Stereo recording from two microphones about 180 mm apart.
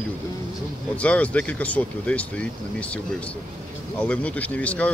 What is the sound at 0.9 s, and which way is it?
Speech, 5° left (ahead or behind).